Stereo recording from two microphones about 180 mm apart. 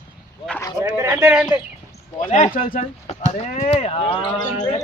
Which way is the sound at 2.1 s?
45° left (ahead or behind).